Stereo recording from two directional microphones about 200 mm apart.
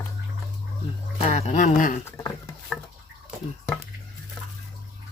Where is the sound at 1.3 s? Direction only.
35° left (ahead or behind).